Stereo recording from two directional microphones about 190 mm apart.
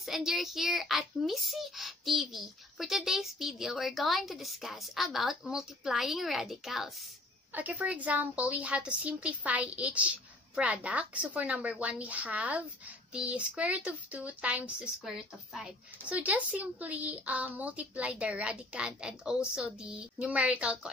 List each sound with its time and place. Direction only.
0.0 s a child's voice: centre (ahead or behind)